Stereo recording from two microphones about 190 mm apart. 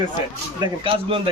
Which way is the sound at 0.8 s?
30° right (ahead or behind).